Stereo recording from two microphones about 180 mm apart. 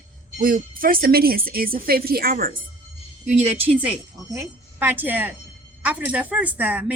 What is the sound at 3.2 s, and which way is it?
Speech, 35° right (ahead or behind).